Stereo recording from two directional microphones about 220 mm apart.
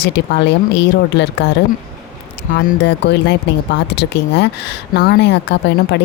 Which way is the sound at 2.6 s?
45° left (ahead or behind).